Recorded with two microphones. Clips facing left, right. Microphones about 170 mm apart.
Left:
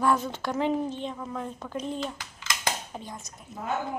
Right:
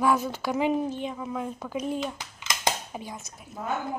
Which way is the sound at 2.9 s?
5° right (ahead or behind).